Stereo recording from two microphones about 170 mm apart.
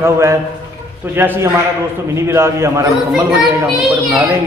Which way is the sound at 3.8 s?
Centre (ahead or behind).